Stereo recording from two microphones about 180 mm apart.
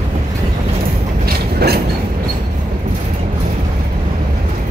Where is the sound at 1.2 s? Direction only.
60° right (ahead or behind).